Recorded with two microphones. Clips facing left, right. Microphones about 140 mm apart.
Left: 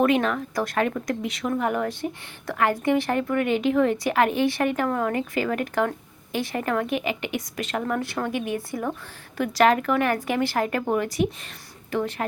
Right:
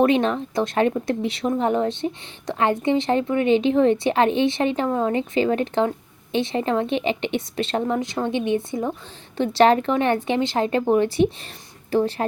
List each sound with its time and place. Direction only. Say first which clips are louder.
0.0 s a woman's voice: right 3 dB; 30° right (ahead or behind)